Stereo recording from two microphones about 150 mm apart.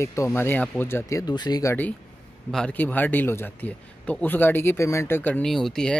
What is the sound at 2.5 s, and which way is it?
Speech, 5° left (ahead or behind).